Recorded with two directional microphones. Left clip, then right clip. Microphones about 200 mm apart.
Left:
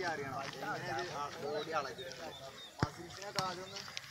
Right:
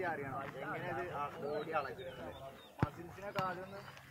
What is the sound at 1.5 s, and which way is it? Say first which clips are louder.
Speech: left 1 dB; 25° right (ahead or behind).